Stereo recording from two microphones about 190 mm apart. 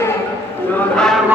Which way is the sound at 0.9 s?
5° left (ahead or behind).